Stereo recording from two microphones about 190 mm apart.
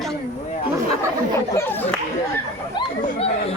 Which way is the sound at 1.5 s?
10° left (ahead or behind).